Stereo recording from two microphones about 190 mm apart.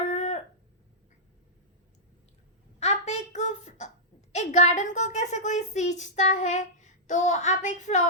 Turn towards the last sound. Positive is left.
turn(degrees=40)  # may be behind; listen again after turning